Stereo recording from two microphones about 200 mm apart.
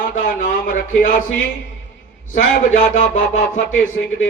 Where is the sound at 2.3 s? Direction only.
40° left (ahead or behind).